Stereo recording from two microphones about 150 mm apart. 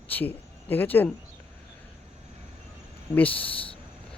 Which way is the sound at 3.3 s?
35° left (ahead or behind).